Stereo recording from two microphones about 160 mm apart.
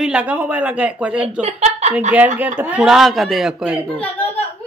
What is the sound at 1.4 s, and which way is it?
Speech, 45° right (ahead or behind).